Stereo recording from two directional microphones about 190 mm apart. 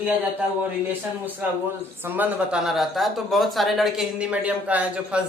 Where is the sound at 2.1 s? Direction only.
10° right (ahead or behind).